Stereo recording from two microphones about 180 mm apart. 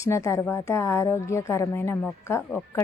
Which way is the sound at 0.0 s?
15° left (ahead or behind).